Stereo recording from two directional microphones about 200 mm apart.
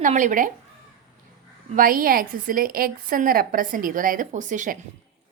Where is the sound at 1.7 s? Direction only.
45° right (ahead or behind).